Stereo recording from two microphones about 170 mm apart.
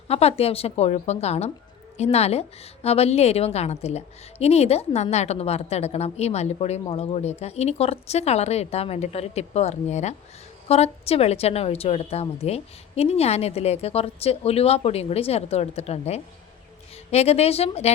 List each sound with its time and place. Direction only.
0.1 s a woman's voice: 35° left (ahead or behind)